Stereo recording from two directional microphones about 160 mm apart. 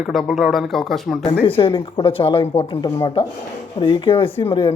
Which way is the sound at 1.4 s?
35° left (ahead or behind).